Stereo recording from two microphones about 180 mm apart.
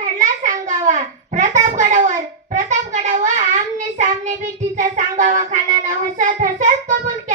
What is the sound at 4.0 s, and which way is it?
Child singing, 40° right (ahead or behind).